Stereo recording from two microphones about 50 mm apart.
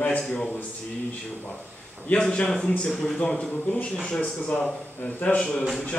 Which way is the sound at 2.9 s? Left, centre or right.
Centre.